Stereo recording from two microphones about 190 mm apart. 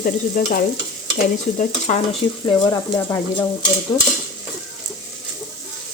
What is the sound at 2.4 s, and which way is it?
Speech, 20° left (ahead or behind).